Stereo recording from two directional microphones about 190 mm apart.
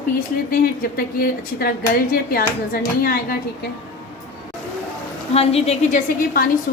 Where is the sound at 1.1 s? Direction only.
55° left (ahead or behind).